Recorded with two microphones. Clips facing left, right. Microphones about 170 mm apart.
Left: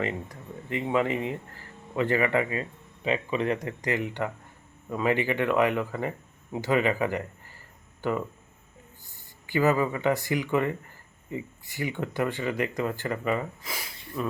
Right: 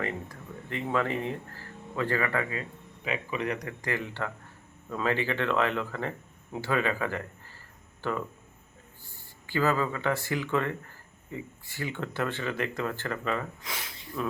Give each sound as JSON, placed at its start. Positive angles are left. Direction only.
{"t": 0.0, "sound": "speech", "side_deg": 15}
{"t": 9.5, "sound": "speech", "side_deg": 15}